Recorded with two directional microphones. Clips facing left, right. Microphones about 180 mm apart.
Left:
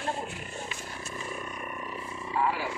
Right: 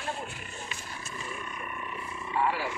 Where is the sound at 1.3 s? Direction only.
40° left (ahead or behind).